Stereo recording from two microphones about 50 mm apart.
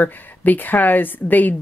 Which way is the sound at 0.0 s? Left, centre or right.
Left.